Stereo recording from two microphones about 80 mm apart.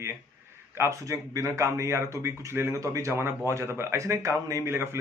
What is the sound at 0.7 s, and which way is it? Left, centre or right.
Speech, right.